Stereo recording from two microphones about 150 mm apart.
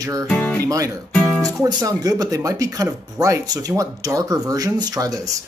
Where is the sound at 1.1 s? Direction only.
5° left (ahead or behind).